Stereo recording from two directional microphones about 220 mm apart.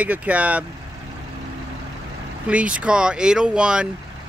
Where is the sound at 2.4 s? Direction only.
5° right (ahead or behind).